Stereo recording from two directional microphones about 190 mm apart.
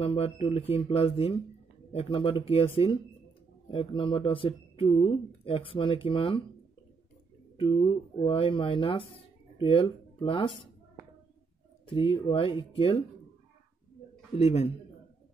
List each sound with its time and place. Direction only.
0.0 s speech: 30° left (ahead or behind)
7.5 s speech: 25° left (ahead or behind)
11.8 s speech: 25° left (ahead or behind)
14.3 s speech: 35° left (ahead or behind)